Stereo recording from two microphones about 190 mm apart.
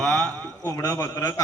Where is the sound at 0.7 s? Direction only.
15° left (ahead or behind).